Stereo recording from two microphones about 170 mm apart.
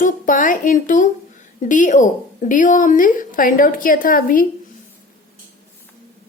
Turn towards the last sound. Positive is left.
turn(degrees=55)  # may be behind; listen again after turning